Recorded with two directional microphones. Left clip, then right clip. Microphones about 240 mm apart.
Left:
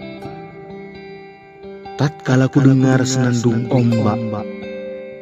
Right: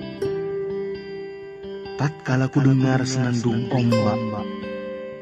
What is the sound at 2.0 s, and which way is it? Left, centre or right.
A man's voice, centre.